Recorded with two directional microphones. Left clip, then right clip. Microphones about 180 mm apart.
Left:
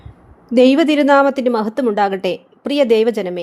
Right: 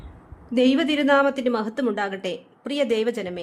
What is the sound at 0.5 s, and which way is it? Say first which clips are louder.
A woman's voice: left 9 dB; 35° left (ahead or behind).